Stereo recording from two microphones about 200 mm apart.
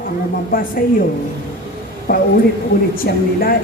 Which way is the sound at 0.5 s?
45° left (ahead or behind).